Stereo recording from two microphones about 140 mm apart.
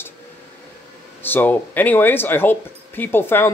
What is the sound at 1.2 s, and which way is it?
Speech, 15° left (ahead or behind).